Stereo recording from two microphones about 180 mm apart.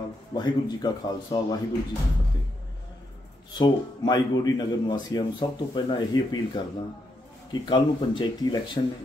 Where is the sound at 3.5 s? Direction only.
25° left (ahead or behind).